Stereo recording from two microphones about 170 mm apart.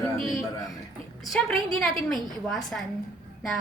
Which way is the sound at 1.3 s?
Centre (ahead or behind).